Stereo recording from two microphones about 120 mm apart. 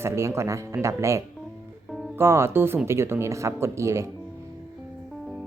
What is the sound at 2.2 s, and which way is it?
Speech, 20° right (ahead or behind).